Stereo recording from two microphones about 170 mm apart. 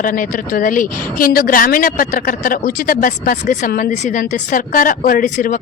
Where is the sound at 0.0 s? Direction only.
55° left (ahead or behind).